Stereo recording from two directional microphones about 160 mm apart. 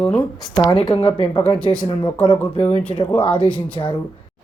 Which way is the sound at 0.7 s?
30° left (ahead or behind).